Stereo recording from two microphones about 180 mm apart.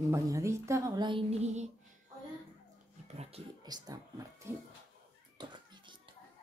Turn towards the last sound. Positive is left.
turn(degrees=-25)  # may be behind; listen again after turning